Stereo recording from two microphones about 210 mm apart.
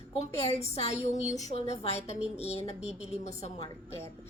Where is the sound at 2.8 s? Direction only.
5° right (ahead or behind).